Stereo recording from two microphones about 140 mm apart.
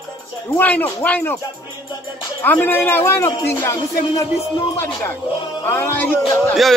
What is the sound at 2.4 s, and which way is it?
Speech, 15° left (ahead or behind).